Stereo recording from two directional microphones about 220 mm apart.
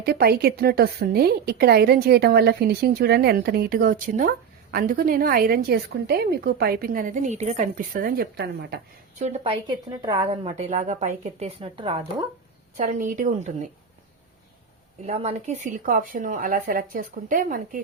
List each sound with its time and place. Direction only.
0.0 s a woman's voice: 45° right (ahead or behind)
9.2 s a woman's voice: 30° right (ahead or behind)
12.7 s a woman's voice: 35° right (ahead or behind)
15.0 s a woman's voice: 30° right (ahead or behind)